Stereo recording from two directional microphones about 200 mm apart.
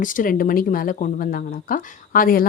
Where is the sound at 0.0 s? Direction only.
40° left (ahead or behind).